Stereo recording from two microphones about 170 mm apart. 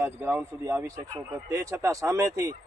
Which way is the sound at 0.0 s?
15° right (ahead or behind).